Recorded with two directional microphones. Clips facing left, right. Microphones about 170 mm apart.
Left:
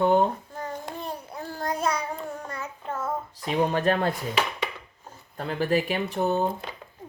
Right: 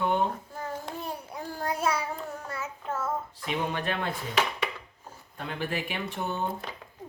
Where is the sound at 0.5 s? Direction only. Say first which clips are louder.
Left 1 dB; 5° right (ahead or behind).